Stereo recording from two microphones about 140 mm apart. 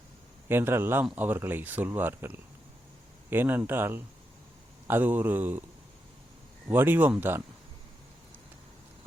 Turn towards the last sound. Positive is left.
turn(degrees=-15)  # may be behind; listen again after turning